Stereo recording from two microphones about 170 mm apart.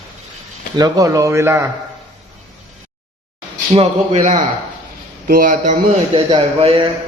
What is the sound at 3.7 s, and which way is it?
A man's voice, 40° right (ahead or behind).